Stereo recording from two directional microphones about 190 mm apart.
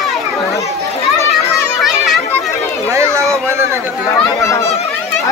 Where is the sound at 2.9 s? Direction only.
15° right (ahead or behind).